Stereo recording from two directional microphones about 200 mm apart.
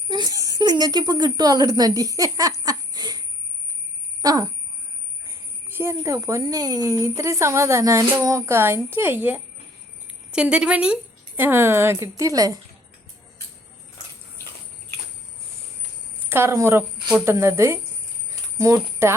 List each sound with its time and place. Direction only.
0.1 s a sound: 20° right (ahead or behind)
4.2 s speech: 15° right (ahead or behind)
16.3 s speech: 15° right (ahead or behind)